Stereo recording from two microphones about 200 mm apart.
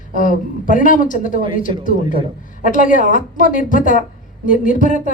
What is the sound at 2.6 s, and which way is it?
A woman's voice, 40° left (ahead or behind).